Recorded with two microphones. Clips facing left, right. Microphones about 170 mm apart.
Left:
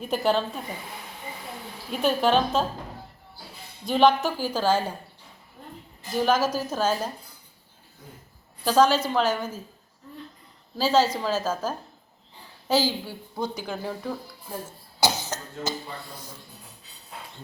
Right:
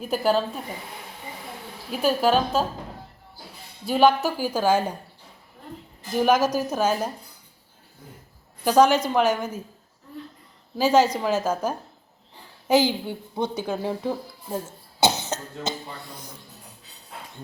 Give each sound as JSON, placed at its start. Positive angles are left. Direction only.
{"t": 0.0, "sound": "a woman's voice", "side_deg": -5}
{"t": 1.9, "sound": "a woman's voice", "side_deg": -5}
{"t": 3.8, "sound": "a woman's voice", "side_deg": -5}
{"t": 6.1, "sound": "a woman's voice", "side_deg": -15}
{"t": 8.6, "sound": "a woman's voice", "side_deg": -15}
{"t": 10.8, "sound": "a woman's voice", "side_deg": -15}
{"t": 15.0, "sound": "cough", "side_deg": -25}